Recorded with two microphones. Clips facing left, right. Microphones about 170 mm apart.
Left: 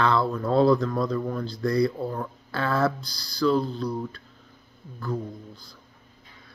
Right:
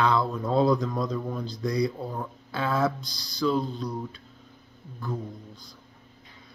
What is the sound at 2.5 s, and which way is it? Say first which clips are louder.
Speech: left 1 dB; 15° right (ahead or behind).